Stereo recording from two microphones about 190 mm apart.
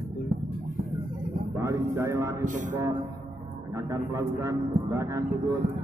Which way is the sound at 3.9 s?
15° right (ahead or behind).